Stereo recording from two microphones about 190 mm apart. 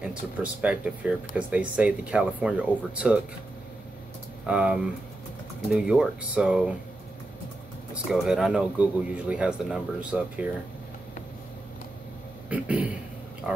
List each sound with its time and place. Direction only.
0.0 s speech: 5° right (ahead or behind)
4.5 s speech: 5° right (ahead or behind)
7.9 s speech: centre (ahead or behind)
12.4 s a man's voice: 5° right (ahead or behind)